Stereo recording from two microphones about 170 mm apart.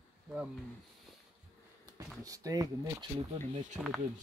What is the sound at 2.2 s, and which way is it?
Speech, 20° right (ahead or behind).